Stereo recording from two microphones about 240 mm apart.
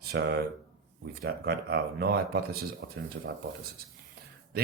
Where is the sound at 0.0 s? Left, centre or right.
Right.